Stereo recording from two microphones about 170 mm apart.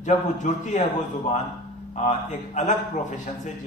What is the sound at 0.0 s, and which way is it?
A man's voice, 45° left (ahead or behind).